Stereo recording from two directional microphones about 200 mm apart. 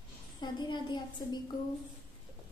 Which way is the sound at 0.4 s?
20° left (ahead or behind).